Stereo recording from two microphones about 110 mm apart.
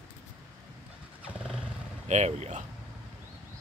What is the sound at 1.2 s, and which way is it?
Motorcycle, 5° right (ahead or behind).